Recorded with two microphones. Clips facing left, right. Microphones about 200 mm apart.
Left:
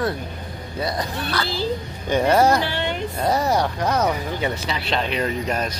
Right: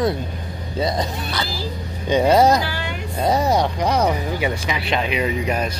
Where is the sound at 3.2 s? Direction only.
15° right (ahead or behind).